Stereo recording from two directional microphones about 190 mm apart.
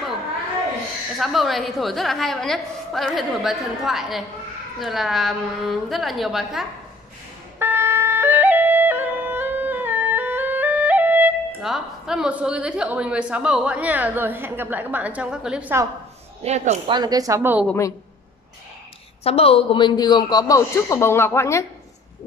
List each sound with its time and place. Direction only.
1.1 s a woman's voice: centre (ahead or behind)
7.5 s music: 10° right (ahead or behind)
16.4 s speech: 35° right (ahead or behind)
16.9 s a woman's voice: 20° right (ahead or behind)
19.2 s a man's voice: 30° left (ahead or behind); by 21.6 s 15° left (ahead or behind)